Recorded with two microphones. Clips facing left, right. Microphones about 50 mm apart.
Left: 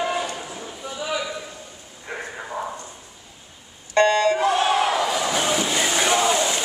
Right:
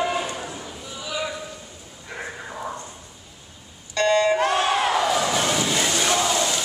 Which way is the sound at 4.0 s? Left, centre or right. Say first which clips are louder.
Left 5 dB; left.